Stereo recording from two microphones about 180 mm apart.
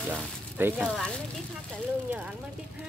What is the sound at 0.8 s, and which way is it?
Speech, 5° left (ahead or behind).